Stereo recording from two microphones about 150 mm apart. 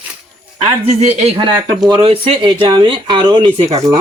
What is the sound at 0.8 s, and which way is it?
Speech, 45° right (ahead or behind).